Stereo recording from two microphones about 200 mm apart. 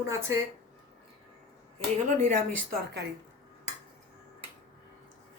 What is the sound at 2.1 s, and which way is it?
Speech, 40° right (ahead or behind).